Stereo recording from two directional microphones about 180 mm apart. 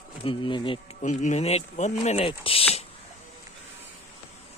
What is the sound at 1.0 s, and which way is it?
Speech, 40° left (ahead or behind).